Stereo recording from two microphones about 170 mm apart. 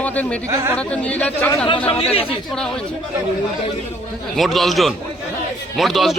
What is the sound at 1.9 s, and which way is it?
Speech, 35° left (ahead or behind).